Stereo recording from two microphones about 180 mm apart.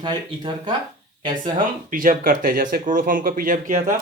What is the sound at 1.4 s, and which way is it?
Speech, 50° right (ahead or behind).